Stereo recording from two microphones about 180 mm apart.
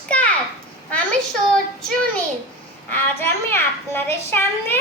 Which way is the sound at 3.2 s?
10° left (ahead or behind).